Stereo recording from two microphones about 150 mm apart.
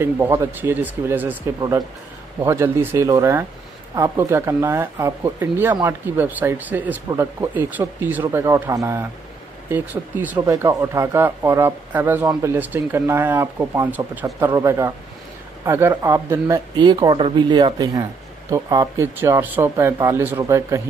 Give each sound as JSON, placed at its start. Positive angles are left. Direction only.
{"t": 0.0, "sound": "speech", "side_deg": -15}
{"t": 10.4, "sound": "speech", "side_deg": -20}